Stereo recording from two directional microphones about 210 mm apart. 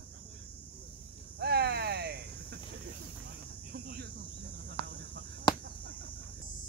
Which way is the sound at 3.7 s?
50° right (ahead or behind).